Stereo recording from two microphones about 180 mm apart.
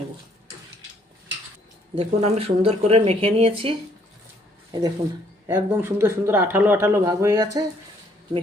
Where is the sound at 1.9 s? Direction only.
30° right (ahead or behind).